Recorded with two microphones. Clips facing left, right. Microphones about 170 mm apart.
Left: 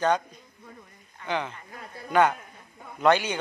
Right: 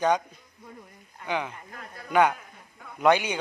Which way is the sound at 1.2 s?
10° right (ahead or behind).